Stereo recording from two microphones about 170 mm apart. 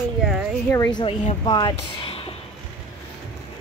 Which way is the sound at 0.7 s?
20° left (ahead or behind).